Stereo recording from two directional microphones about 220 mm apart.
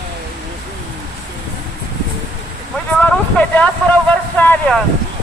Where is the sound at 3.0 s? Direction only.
5° left (ahead or behind).